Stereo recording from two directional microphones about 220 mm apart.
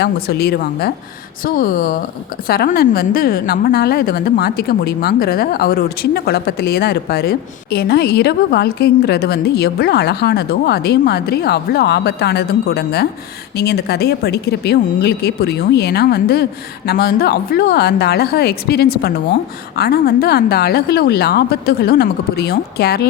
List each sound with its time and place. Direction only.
0.0 s a woman's voice: 45° left (ahead or behind)